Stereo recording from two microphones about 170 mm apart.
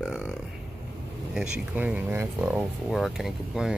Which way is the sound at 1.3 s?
5° right (ahead or behind).